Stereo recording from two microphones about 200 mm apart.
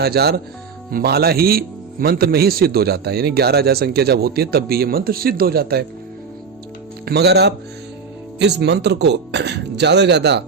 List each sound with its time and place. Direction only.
0.0 s a man's voice: 55° right (ahead or behind)
7.0 s speech: 55° right (ahead or behind)